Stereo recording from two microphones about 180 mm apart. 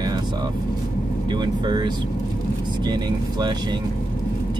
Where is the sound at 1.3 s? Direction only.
25° right (ahead or behind).